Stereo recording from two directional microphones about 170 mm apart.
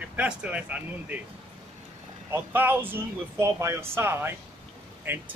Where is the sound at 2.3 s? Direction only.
10° right (ahead or behind).